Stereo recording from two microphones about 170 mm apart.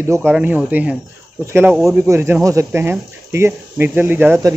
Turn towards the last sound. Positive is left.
turn(degrees=-15)  # may be behind; listen again after turning